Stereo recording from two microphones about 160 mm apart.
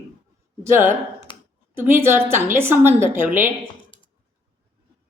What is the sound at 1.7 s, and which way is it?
A woman's voice, 15° right (ahead or behind).